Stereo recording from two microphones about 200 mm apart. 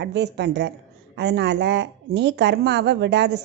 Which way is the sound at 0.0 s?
60° right (ahead or behind).